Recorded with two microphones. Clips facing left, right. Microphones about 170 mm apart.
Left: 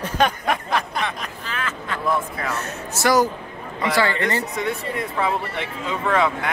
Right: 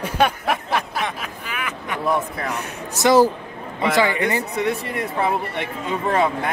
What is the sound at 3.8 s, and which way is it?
Speech, 15° right (ahead or behind).